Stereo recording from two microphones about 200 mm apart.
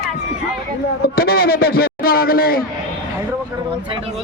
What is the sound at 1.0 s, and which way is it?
A man's voice, 50° left (ahead or behind).